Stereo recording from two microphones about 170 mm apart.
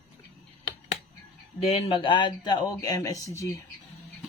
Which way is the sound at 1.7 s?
35° left (ahead or behind).